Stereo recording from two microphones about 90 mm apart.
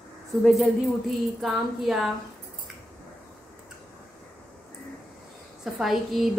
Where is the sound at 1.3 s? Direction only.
5° right (ahead or behind).